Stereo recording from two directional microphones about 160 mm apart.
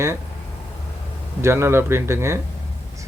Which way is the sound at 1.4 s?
15° right (ahead or behind).